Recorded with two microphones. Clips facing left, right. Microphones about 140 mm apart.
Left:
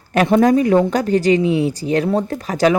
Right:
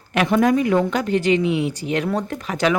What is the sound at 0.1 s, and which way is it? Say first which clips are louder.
A woman's voice: left 4 dB; 35° left (ahead or behind).